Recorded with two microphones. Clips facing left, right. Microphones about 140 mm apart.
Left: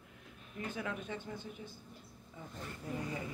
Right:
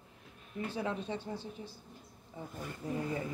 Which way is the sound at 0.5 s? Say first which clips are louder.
Right 4 dB; 30° right (ahead or behind).